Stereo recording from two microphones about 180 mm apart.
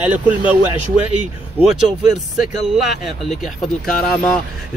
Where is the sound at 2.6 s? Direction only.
Centre (ahead or behind).